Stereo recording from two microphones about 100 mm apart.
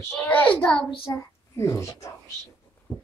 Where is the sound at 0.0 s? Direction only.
30° left (ahead or behind).